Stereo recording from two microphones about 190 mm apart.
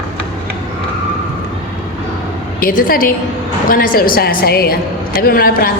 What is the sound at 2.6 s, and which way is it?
A man's voice, 50° left (ahead or behind).